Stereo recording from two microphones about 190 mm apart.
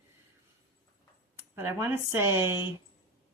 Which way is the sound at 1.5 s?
10° right (ahead or behind).